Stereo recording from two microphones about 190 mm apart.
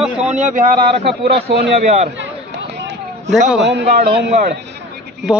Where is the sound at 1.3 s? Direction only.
30° right (ahead or behind).